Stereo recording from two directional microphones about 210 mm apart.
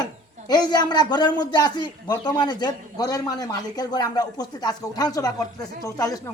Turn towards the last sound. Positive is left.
turn(degrees=15)  # may be behind; listen again after turning